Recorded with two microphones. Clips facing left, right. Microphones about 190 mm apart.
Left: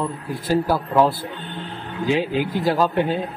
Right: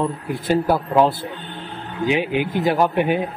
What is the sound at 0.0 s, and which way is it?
A man's voice, 20° right (ahead or behind).